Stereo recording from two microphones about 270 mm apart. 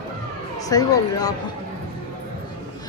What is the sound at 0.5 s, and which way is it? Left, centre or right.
Speech, centre.